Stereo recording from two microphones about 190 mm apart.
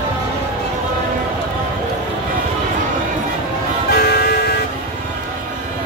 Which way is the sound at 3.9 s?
55° left (ahead or behind).